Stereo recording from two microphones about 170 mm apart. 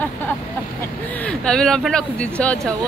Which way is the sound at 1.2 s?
5° left (ahead or behind).